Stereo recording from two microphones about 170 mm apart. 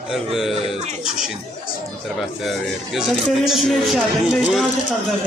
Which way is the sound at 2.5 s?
Centre (ahead or behind).